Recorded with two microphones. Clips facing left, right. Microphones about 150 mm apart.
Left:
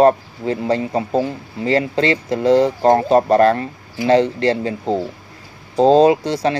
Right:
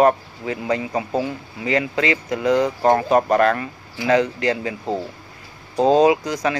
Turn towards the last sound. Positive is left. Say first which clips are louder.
# left 3 dB
turn(degrees=30)  # may be behind; listen again after turning